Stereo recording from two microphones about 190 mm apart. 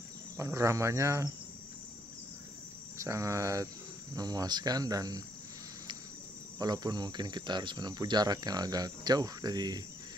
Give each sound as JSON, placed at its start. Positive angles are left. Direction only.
{"t": 0.4, "sound": "speech", "side_deg": -15}
{"t": 3.0, "sound": "speech", "side_deg": -15}
{"t": 6.6, "sound": "speech", "side_deg": -20}